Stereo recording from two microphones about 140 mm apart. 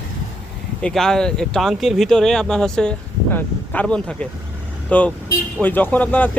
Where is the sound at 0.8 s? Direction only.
5° left (ahead or behind).